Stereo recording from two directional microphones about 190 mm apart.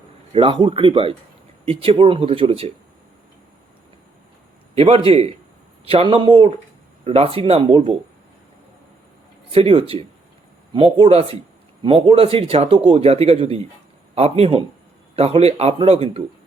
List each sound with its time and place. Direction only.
0.3 s speech: 25° right (ahead or behind)
4.7 s a man's voice: 30° right (ahead or behind)
9.5 s a man's voice: 30° right (ahead or behind)